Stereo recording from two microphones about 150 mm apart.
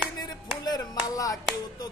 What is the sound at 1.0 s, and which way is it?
Music, 25° left (ahead or behind).